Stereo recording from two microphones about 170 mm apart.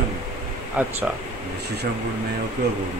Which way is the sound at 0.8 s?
10° right (ahead or behind).